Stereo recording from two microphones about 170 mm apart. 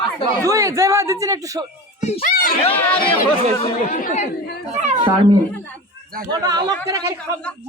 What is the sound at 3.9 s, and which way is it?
Speech, 50° left (ahead or behind).